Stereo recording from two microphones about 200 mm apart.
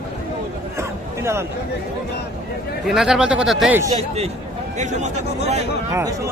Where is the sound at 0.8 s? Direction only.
15° right (ahead or behind).